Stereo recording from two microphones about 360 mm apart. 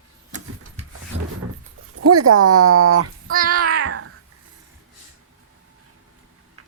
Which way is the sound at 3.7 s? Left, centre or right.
Right.